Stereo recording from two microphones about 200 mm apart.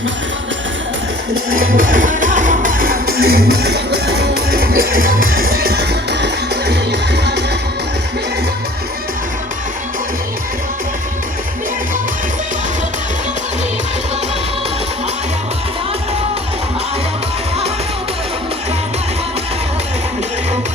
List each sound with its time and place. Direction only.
1.5 s music: 45° right (ahead or behind)
5.2 s music: 90° right
5.5 s music: 50° right (ahead or behind)